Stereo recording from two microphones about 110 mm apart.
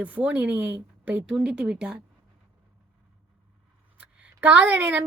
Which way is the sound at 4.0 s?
15° right (ahead or behind).